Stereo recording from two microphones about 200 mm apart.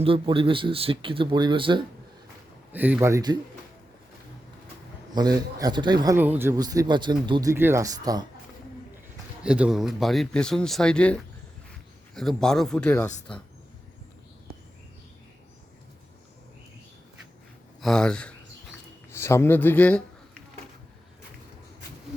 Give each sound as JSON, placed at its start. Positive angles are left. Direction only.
{"t": 0.0, "sound": "a man's voice", "side_deg": -25}
{"t": 2.7, "sound": "speech", "side_deg": -10}
{"t": 5.1, "sound": "a man's voice", "side_deg": -20}
{"t": 9.4, "sound": "speech", "side_deg": -5}
{"t": 17.7, "sound": "speech", "side_deg": 0}